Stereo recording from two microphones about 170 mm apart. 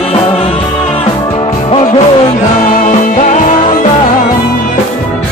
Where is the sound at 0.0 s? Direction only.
35° left (ahead or behind).